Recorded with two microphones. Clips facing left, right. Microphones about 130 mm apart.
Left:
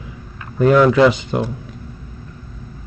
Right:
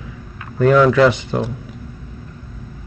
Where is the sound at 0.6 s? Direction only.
10° left (ahead or behind).